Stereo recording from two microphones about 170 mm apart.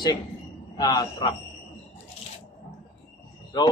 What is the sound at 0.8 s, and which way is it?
Speech, 25° left (ahead or behind).